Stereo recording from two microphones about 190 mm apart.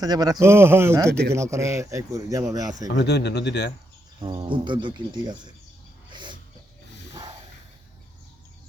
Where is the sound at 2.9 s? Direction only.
60° left (ahead or behind).